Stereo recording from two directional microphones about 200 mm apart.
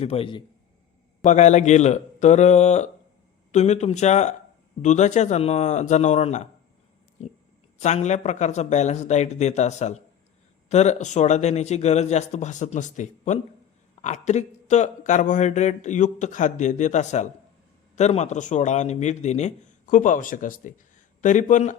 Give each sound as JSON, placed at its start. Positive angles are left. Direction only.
{"t": 0.0, "sound": "a man's voice", "side_deg": 30}
{"t": 1.2, "sound": "speech", "side_deg": 35}
{"t": 7.8, "sound": "speech", "side_deg": 35}